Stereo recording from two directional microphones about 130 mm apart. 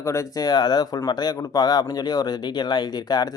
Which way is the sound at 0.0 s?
25° left (ahead or behind).